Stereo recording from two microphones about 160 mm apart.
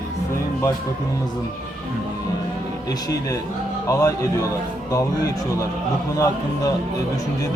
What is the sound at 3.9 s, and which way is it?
Speech, 20° left (ahead or behind).